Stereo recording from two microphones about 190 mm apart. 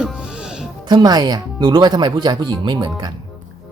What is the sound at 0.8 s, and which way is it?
Speech, 25° right (ahead or behind).